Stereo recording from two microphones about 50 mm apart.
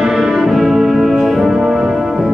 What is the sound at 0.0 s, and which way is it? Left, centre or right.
Brass instrument, centre.